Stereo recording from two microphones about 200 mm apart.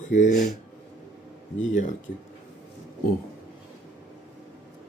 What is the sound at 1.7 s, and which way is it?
Speech, 40° left (ahead or behind).